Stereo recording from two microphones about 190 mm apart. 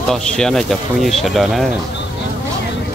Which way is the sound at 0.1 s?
Centre (ahead or behind).